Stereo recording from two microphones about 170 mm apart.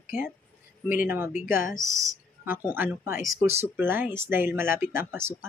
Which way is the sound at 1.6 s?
50° left (ahead or behind).